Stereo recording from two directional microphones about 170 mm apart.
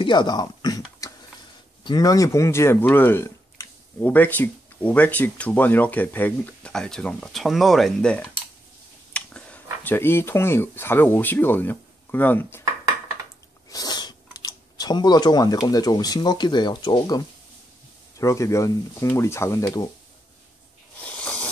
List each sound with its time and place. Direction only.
0.0 s a sound: 25° left (ahead or behind)
1.9 s speech: 20° left (ahead or behind)
13.7 s speech: 20° left (ahead or behind)
18.2 s speech: 20° left (ahead or behind)
21.0 s snake: 10° left (ahead or behind)